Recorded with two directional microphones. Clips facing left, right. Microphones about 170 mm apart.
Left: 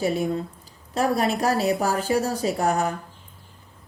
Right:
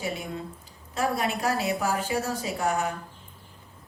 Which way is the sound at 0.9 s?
40° left (ahead or behind).